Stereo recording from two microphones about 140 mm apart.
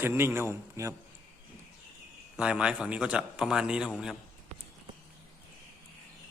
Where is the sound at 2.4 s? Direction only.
5° right (ahead or behind).